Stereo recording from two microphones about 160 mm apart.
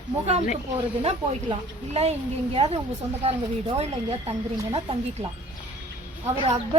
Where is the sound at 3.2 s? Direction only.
40° right (ahead or behind).